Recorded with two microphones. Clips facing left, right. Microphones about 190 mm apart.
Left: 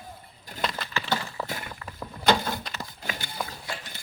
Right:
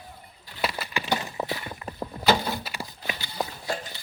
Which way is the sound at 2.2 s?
5° right (ahead or behind).